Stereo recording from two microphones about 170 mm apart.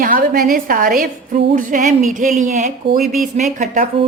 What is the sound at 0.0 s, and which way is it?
A woman's voice, 55° right (ahead or behind).